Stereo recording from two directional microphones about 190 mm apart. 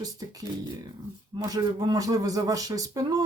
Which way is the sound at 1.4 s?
20° right (ahead or behind).